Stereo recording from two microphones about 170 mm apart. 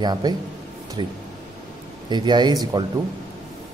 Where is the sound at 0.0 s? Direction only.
25° right (ahead or behind).